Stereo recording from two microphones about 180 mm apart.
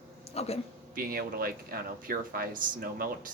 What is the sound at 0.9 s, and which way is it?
Speech, 55° right (ahead or behind).